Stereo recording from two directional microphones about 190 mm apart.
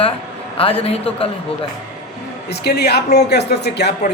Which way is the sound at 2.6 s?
60° left (ahead or behind).